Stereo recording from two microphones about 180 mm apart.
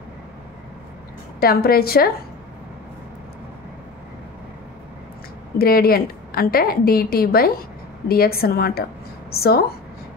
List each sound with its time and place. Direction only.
1.4 s a woman's voice: 55° left (ahead or behind)
5.6 s a woman's voice: 55° left (ahead or behind)